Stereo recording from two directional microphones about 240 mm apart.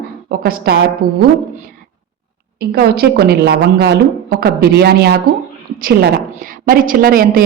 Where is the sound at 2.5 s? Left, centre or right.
Right.